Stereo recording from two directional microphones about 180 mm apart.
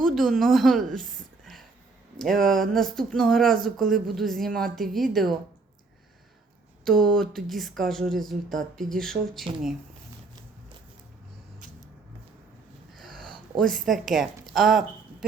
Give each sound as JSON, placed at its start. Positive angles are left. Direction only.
{"t": 0.0, "sound": "speech", "side_deg": 0}
{"t": 2.4, "sound": "speech", "side_deg": 0}
{"t": 6.8, "sound": "speech", "side_deg": 5}
{"t": 12.9, "sound": "wheeze", "side_deg": 0}
{"t": 13.6, "sound": "a woman's voice", "side_deg": 0}